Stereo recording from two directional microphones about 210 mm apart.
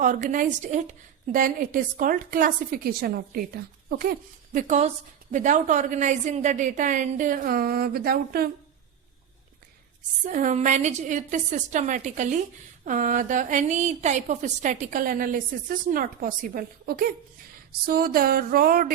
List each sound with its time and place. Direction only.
0.0 s a woman's voice: 40° right (ahead or behind)
10.2 s a woman's voice: 35° right (ahead or behind)
17.8 s a sound: 45° right (ahead or behind)